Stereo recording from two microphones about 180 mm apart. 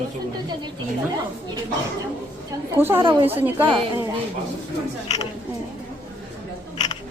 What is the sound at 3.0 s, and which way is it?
Speech, 30° right (ahead or behind).